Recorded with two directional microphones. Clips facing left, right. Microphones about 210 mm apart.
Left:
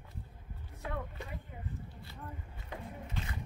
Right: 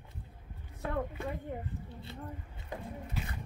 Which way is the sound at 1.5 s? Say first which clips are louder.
Right 10 dB; 55° right (ahead or behind).